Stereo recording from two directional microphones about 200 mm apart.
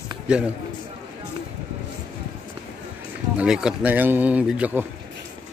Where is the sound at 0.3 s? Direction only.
5° right (ahead or behind).